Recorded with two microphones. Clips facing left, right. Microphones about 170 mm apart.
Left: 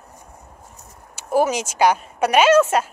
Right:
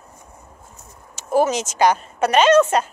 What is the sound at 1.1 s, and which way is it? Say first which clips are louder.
Speech: right 1 dB; 10° left (ahead or behind).